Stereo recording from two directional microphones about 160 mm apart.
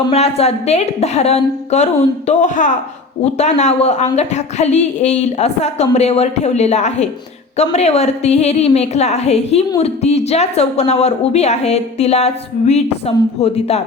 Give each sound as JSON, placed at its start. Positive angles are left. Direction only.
{"t": 0.1, "sound": "a woman's voice", "side_deg": 40}